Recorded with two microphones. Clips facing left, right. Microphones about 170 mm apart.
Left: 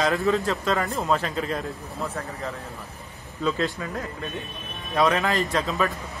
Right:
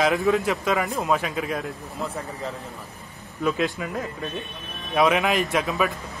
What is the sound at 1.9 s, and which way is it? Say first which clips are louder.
A man's voice: right 1 dB; 15° right (ahead or behind).